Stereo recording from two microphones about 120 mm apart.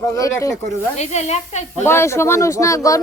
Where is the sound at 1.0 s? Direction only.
70° left (ahead or behind).